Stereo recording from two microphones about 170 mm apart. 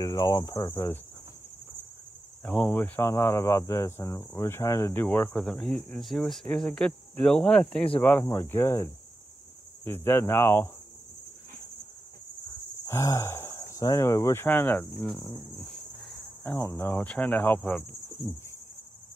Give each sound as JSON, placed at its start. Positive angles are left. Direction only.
{"t": 0.0, "sound": "cricket", "side_deg": 25}
{"t": 2.4, "sound": "cricket", "side_deg": 10}
{"t": 5.9, "sound": "speech", "side_deg": 0}
{"t": 8.0, "sound": "cricket", "side_deg": 10}
{"t": 12.8, "sound": "speech", "side_deg": 15}
{"t": 15.6, "sound": "cricket", "side_deg": 0}
{"t": 16.4, "sound": "cricket", "side_deg": 15}